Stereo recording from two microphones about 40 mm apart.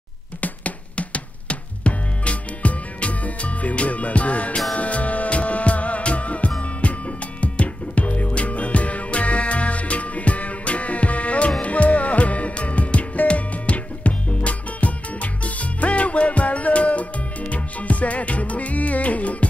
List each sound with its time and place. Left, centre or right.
0.4 s music: left